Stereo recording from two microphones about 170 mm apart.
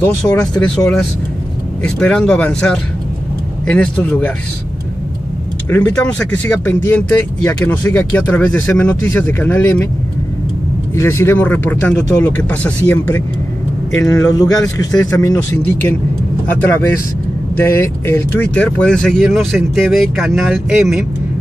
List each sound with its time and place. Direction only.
0.0 s speech: 5° left (ahead or behind)
5.7 s speech: 10° left (ahead or behind)
11.0 s speech: 15° left (ahead or behind)
17.6 s speech: 15° left (ahead or behind); by 21.0 s centre (ahead or behind)